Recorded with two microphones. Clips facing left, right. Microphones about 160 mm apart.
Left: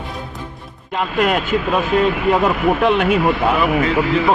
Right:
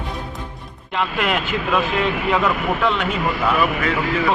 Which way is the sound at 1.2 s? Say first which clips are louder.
Left 8 dB; 45° left (ahead or behind).